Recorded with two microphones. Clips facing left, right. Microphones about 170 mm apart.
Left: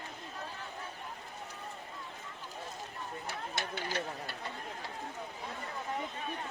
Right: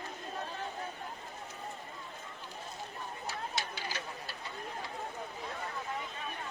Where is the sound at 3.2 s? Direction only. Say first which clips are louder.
Right 1 dB; 55° left (ahead or behind).